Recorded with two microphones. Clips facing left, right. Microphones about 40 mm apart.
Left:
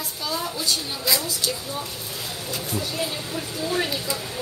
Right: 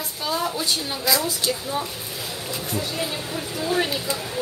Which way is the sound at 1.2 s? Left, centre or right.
Right.